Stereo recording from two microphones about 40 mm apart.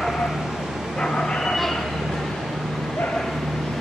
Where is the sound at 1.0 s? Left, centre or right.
Centre.